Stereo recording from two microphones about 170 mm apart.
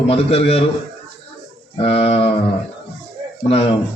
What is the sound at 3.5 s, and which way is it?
Speech, 35° left (ahead or behind).